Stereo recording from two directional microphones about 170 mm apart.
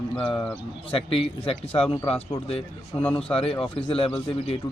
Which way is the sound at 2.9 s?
20° left (ahead or behind).